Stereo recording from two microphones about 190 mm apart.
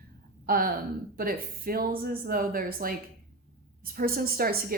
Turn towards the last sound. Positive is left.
turn(degrees=-50)  # may be behind; listen again after turning